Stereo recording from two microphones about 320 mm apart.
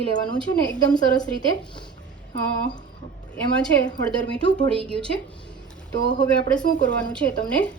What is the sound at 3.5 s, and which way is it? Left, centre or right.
Speech, centre.